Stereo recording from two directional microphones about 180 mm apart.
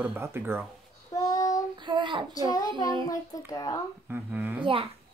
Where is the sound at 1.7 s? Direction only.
25° right (ahead or behind).